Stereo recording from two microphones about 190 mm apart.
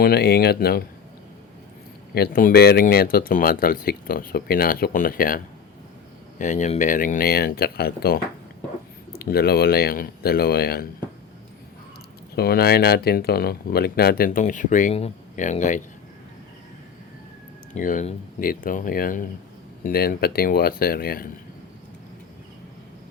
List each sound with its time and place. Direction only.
0.0 s speech: 55° left (ahead or behind)
2.1 s speech: 50° left (ahead or behind)
6.4 s speech: 40° left (ahead or behind)
12.4 s speech: 55° left (ahead or behind); by 15.8 s 40° left (ahead or behind)
17.7 s speech: 40° left (ahead or behind)